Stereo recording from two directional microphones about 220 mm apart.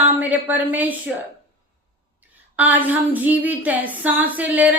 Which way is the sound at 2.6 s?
5° right (ahead or behind).